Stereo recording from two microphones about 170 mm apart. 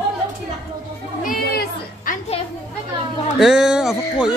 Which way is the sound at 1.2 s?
55° left (ahead or behind).